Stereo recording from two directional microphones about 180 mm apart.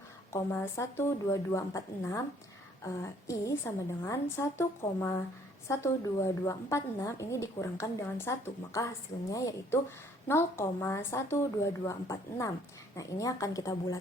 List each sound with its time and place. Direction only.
0.3 s a woman's voice: 15° left (ahead or behind)